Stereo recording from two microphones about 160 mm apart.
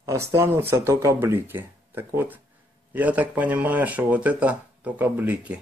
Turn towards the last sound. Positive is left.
turn(degrees=-10)  # may be behind; listen again after turning